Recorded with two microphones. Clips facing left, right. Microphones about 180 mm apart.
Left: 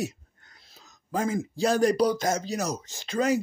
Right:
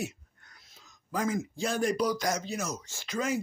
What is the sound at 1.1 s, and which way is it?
Speech, 25° left (ahead or behind).